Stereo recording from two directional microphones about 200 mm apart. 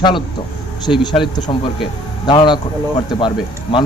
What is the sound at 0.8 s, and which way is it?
Speech, 20° left (ahead or behind).